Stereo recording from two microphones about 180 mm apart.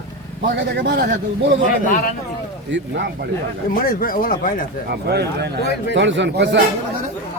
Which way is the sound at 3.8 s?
55° left (ahead or behind).